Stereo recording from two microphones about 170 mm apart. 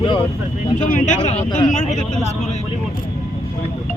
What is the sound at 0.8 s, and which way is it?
Speech, 45° left (ahead or behind).